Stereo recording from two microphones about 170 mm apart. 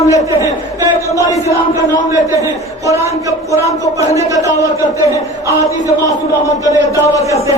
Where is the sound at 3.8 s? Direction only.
20° left (ahead or behind).